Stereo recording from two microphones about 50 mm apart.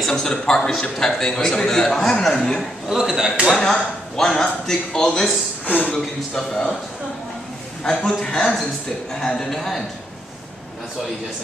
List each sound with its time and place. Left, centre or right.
0.0 s speech: centre
2.6 s a man's voice: centre
3.4 s speech: centre
5.7 s speech: left
5.9 s speech: centre
7.8 s a man's voice: centre